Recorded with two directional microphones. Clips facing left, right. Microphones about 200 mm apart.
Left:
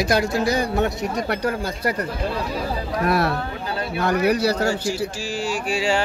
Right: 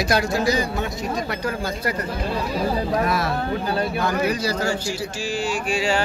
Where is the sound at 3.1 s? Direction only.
60° left (ahead or behind).